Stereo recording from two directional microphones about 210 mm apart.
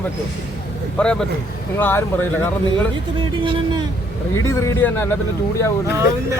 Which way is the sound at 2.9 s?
25° right (ahead or behind).